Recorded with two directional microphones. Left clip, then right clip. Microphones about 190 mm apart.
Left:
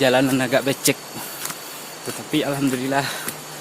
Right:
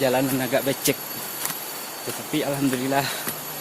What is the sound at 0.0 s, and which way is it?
Speech, 35° left (ahead or behind).